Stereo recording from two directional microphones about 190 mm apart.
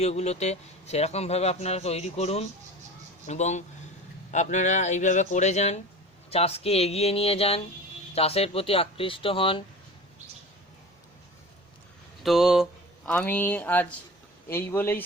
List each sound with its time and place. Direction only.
0.0 s a man's voice: 35° left (ahead or behind)
12.2 s speech: centre (ahead or behind)
13.1 s speech: 10° left (ahead or behind)